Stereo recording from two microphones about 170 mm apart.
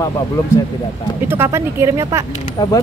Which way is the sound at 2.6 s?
25° left (ahead or behind).